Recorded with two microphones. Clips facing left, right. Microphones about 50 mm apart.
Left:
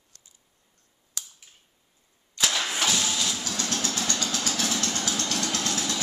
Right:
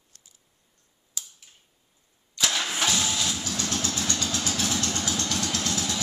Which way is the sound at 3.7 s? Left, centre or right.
Centre.